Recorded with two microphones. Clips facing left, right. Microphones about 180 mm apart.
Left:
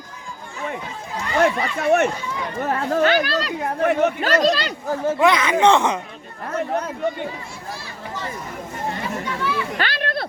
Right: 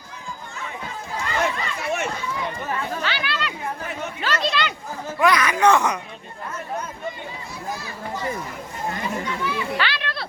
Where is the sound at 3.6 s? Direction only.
65° left (ahead or behind).